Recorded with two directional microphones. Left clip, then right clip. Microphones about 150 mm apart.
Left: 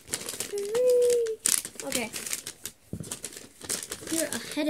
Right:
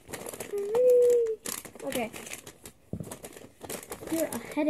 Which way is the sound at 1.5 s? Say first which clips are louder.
Left 4 dB; 45° left (ahead or behind).